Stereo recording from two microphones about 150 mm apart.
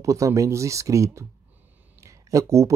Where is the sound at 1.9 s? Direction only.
20° right (ahead or behind).